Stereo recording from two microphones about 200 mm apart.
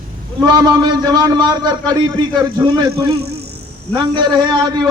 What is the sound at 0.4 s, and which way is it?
A man's voice, 20° right (ahead or behind).